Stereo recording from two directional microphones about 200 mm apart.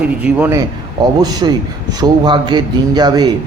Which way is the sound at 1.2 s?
20° right (ahead or behind).